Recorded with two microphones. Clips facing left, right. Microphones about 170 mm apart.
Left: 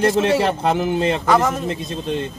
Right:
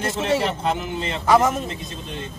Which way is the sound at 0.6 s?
75° left (ahead or behind).